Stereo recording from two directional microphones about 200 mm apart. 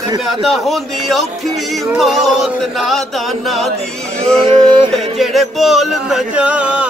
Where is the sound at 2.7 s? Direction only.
Centre (ahead or behind).